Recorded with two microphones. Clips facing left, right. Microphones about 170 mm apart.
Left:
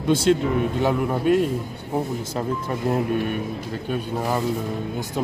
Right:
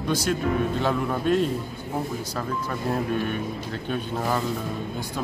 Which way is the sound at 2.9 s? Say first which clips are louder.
Left 3 dB; 20° left (ahead or behind).